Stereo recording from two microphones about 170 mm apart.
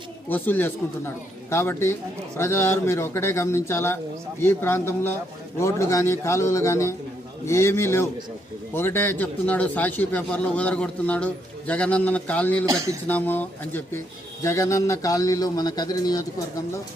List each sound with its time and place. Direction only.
0.3 s a man's voice: 10° left (ahead or behind)
12.6 s speech: 20° right (ahead or behind)
13.1 s a man's voice: 10° left (ahead or behind)